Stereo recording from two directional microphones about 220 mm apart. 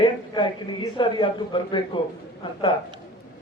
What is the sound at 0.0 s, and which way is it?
A man's voice, 20° left (ahead or behind).